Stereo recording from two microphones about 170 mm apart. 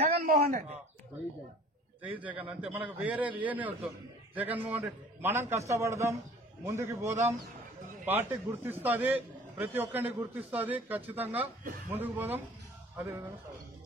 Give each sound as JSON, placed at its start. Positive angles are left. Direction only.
{"t": 0.1, "sound": "a man's voice", "side_deg": -60}
{"t": 2.0, "sound": "a man's voice", "side_deg": -10}